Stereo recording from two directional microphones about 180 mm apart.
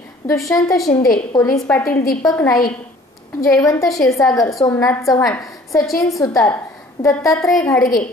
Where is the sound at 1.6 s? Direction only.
5° left (ahead or behind).